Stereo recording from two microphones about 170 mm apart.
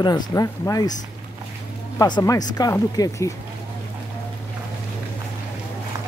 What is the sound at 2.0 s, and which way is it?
Speech, 25° left (ahead or behind).